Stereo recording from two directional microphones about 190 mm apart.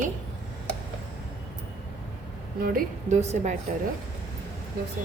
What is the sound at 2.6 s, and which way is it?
Speech, 45° right (ahead or behind).